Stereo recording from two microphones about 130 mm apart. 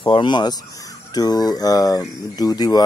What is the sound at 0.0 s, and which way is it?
Speech, 35° left (ahead or behind).